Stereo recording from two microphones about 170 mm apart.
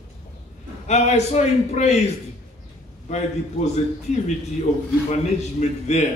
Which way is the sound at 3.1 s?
40° left (ahead or behind).